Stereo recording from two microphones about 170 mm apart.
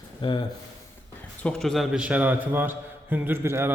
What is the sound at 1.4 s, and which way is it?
A man's voice, centre (ahead or behind).